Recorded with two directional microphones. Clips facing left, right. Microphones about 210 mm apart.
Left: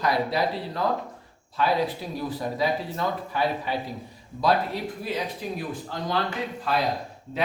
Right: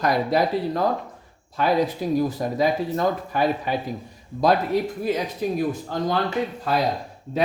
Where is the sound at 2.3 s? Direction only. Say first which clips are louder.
Right 4 dB; 45° right (ahead or behind).